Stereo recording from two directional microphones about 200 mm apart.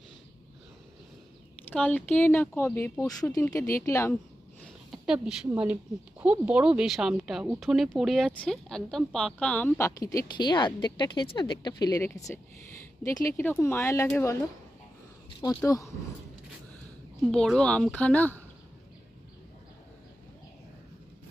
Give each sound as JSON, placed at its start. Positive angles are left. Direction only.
{"t": 1.7, "sound": "speech", "side_deg": 5}
{"t": 4.6, "sound": "a sound", "side_deg": 0}
{"t": 6.1, "sound": "speech", "side_deg": -10}
{"t": 15.4, "sound": "speech", "side_deg": 15}
{"t": 17.3, "sound": "speech", "side_deg": 5}